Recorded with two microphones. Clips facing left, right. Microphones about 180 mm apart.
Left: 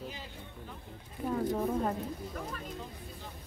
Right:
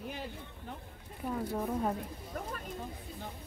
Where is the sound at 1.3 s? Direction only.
Centre (ahead or behind).